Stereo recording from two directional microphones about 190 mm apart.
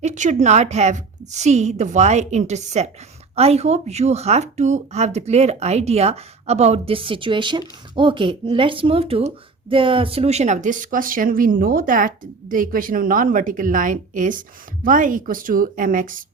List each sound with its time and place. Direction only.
0.0 s speech: 40° right (ahead or behind)